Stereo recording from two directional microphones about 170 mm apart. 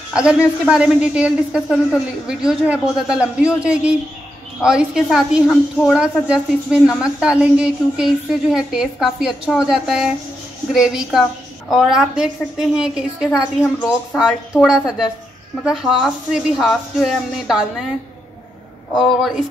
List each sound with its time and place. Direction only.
0.1 s a man's voice: 5° right (ahead or behind)
18.9 s a woman's voice: centre (ahead or behind)